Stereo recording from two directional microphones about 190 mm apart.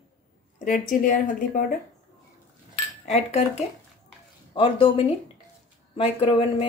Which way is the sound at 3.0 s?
35° left (ahead or behind).